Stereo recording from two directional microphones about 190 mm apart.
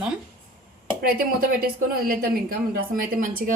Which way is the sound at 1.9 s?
50° right (ahead or behind).